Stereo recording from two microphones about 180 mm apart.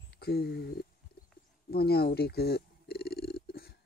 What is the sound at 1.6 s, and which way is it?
Purr, 60° left (ahead or behind).